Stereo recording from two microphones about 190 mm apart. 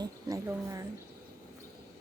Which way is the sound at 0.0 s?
15° right (ahead or behind).